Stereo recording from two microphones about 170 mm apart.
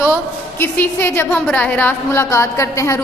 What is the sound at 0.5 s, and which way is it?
A woman's voice, 10° left (ahead or behind).